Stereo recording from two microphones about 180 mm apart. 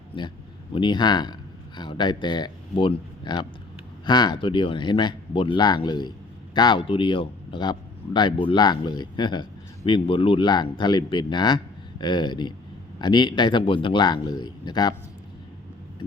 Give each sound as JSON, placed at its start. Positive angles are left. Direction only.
{"t": 0.7, "sound": "speech", "side_deg": 25}